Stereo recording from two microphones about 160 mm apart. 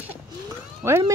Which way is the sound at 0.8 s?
15° right (ahead or behind).